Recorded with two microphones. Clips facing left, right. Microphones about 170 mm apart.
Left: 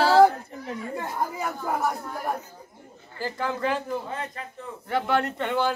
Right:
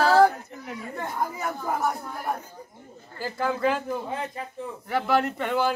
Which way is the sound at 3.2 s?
10° right (ahead or behind).